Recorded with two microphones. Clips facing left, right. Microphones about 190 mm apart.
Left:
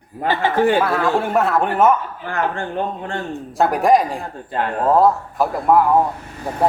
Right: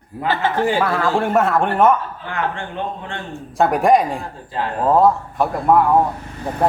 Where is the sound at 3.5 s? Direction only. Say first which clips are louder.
Right 1 dB; centre (ahead or behind).